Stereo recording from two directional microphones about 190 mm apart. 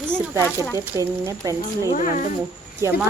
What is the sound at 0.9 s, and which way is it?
A woman's voice, 15° right (ahead or behind).